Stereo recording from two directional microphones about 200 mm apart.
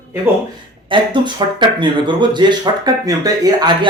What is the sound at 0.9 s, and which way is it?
Speech, 25° right (ahead or behind).